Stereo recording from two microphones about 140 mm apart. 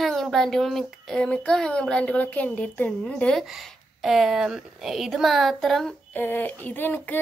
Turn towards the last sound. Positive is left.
turn(degrees=15)  # may be behind; listen again after turning